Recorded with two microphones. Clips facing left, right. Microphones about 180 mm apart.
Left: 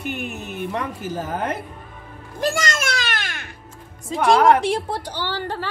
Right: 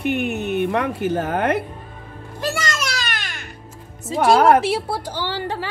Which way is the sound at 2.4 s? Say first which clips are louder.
Left 2 dB; 50° left (ahead or behind).